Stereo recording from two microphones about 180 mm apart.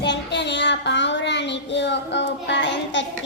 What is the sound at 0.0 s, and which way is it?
Child singing, 70° left (ahead or behind).